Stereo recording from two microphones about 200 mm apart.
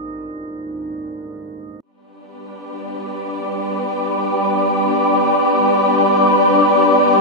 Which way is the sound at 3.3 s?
Centre (ahead or behind).